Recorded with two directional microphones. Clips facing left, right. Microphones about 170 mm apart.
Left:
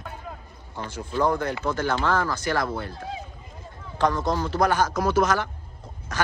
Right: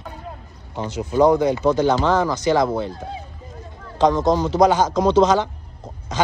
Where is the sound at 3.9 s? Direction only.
20° right (ahead or behind).